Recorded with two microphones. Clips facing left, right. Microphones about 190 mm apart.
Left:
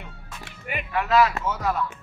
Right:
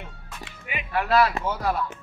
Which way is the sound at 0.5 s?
50° left (ahead or behind).